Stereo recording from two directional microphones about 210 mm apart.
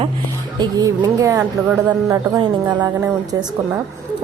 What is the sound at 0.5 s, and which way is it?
A woman's voice, 20° right (ahead or behind).